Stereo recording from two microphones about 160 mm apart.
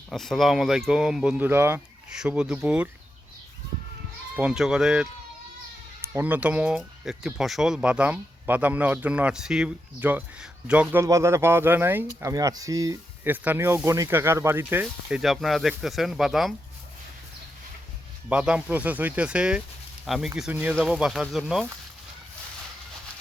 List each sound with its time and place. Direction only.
0.1 s speech: centre (ahead or behind)
4.4 s speech: 5° right (ahead or behind)
11.0 s speech: 15° right (ahead or behind)
15.2 s speech: centre (ahead or behind)
18.3 s speech: 5° right (ahead or behind)